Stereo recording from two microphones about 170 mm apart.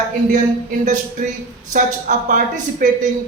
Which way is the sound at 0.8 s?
45° right (ahead or behind).